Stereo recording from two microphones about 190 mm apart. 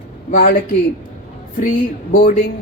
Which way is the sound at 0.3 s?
50° left (ahead or behind).